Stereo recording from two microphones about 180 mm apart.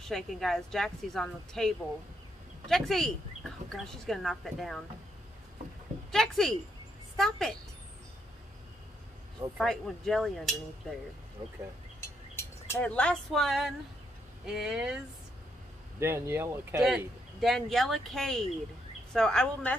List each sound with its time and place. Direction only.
0.1 s speech: centre (ahead or behind)
6.1 s a woman's voice: centre (ahead or behind)
9.6 s speech: centre (ahead or behind)
11.4 s speech: 30° right (ahead or behind)
12.0 s speech: 15° left (ahead or behind); by 15.0 s 5° right (ahead or behind)
16.0 s speech: 15° right (ahead or behind)
17.4 s speech: centre (ahead or behind)